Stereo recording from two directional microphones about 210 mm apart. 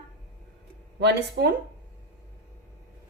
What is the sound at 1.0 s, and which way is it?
Speech, 55° right (ahead or behind).